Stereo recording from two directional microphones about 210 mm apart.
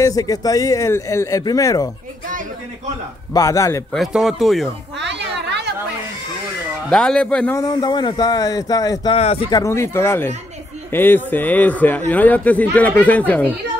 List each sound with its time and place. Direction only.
0.0 s a man's voice: 15° left (ahead or behind)
3.3 s a man's voice: 15° left (ahead or behind)
3.9 s speech: centre (ahead or behind)
4.9 s a sound: 55° right (ahead or behind)
6.9 s a man's voice: 5° left (ahead or behind); by 9.6 s 30° left (ahead or behind)
9.6 s a man's voice: 15° left (ahead or behind)